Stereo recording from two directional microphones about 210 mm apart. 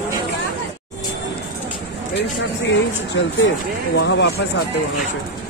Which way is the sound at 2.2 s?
60° left (ahead or behind).